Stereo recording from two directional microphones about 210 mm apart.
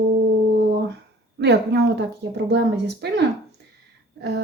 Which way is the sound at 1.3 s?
55° right (ahead or behind).